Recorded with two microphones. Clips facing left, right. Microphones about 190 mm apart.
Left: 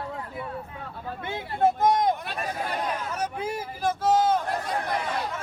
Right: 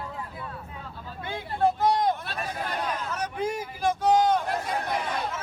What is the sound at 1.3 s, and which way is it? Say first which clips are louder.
Speech: left 1 dB; 20° left (ahead or behind).